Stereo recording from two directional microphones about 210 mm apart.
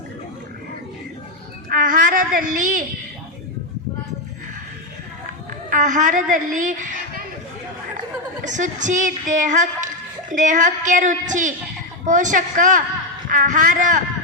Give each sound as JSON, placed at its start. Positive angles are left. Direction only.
{"t": 1.7, "sound": "a sound", "side_deg": -40}
{"t": 5.7, "sound": "a woman's voice", "side_deg": -35}
{"t": 8.4, "sound": "a woman's voice", "side_deg": -35}